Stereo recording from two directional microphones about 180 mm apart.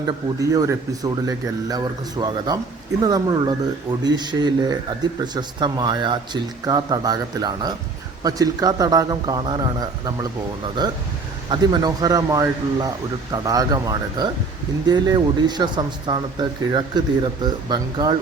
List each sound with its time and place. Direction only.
0.3 s speech: 20° right (ahead or behind)